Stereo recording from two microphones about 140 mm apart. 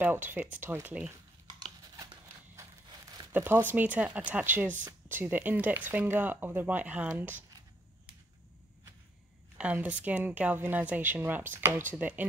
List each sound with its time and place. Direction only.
0.0 s a woman's voice: 15° right (ahead or behind)
1.5 s a sound: 30° right (ahead or behind)
3.3 s a woman's voice: 15° right (ahead or behind)
9.6 s a woman's voice: 10° right (ahead or behind)